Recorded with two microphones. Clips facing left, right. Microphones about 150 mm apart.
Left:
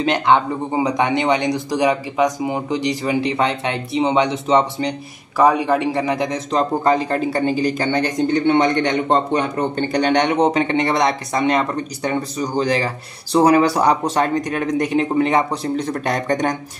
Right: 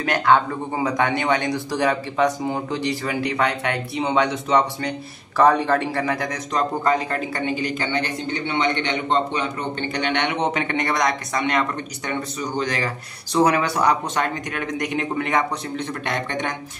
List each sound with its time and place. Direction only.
0.0 s a man's voice: 20° left (ahead or behind)
5.4 s a man's voice: 10° left (ahead or behind); by 16.5 s 40° left (ahead or behind)